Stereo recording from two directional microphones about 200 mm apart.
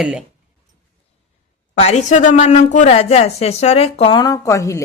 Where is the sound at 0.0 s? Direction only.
5° right (ahead or behind).